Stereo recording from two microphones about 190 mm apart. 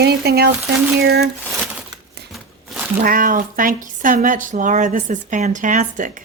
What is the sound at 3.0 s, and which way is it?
Speech, 50° right (ahead or behind).